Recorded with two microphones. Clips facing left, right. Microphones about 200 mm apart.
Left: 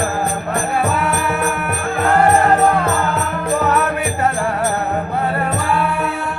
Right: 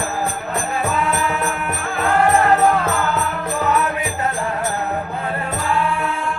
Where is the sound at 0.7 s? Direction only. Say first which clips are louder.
Left 1 dB; 65° left (ahead or behind).